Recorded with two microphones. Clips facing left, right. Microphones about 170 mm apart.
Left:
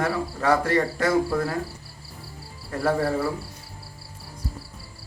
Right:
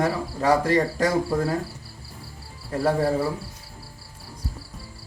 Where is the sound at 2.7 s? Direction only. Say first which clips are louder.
Right 1 dB; 15° right (ahead or behind).